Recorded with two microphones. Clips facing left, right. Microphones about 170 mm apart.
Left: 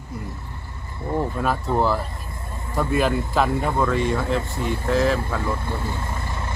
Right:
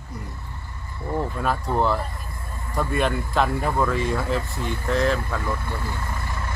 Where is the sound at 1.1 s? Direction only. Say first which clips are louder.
Left 2 dB; 20° left (ahead or behind).